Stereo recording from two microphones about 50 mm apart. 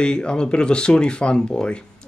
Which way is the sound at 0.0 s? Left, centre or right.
Centre.